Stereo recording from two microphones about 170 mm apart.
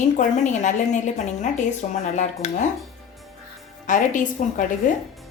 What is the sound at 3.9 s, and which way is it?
A woman's voice, 50° left (ahead or behind).